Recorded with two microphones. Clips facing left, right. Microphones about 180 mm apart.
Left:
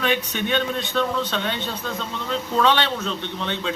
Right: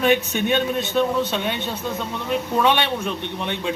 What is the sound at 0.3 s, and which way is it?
A man's voice, 10° right (ahead or behind).